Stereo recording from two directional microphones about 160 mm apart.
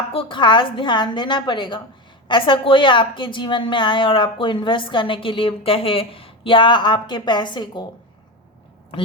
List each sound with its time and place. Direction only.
0.1 s a woman's voice: 30° left (ahead or behind)